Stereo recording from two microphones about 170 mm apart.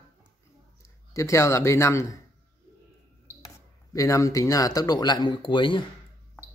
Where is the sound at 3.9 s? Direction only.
20° left (ahead or behind).